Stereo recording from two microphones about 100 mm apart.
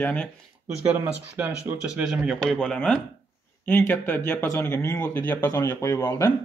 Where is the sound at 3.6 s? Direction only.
20° left (ahead or behind).